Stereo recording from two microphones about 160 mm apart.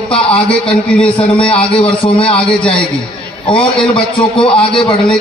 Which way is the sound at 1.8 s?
35° left (ahead or behind).